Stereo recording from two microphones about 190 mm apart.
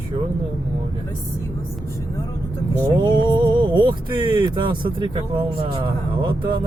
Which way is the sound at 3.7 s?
25° right (ahead or behind).